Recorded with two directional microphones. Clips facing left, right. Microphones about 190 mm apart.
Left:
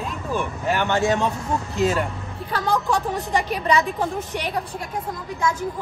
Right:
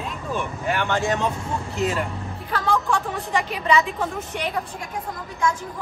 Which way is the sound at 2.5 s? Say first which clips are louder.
Left 1 dB; 35° left (ahead or behind).